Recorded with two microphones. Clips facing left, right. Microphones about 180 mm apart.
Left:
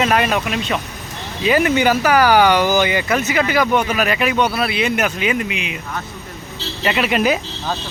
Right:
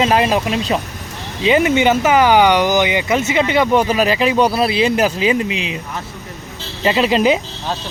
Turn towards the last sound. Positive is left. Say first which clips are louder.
# right 3 dB
turn(degrees=-25)  # may be behind; listen again after turning